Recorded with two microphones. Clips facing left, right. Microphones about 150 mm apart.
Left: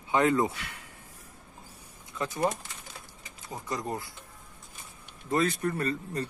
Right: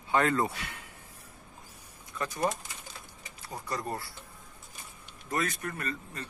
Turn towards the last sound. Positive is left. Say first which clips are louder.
# left 7 dB
turn(degrees=35)  # may be behind; listen again after turning